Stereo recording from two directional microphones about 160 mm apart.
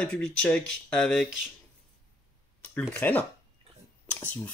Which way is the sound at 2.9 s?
10° left (ahead or behind).